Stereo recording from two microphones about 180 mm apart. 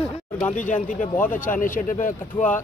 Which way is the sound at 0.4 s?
45° left (ahead or behind).